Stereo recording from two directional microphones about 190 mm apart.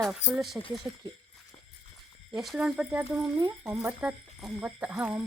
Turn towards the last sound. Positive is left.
turn(degrees=-5)  # may be behind; listen again after turning